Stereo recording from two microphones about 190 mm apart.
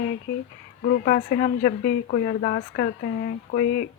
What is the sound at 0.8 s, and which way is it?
Speech, 50° left (ahead or behind).